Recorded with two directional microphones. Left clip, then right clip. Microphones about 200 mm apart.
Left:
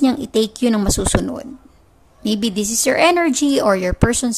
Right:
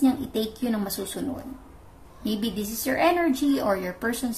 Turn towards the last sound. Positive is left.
turn(degrees=45)  # may be behind; listen again after turning